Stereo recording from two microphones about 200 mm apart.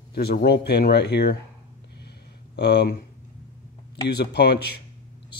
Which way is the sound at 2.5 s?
55° left (ahead or behind).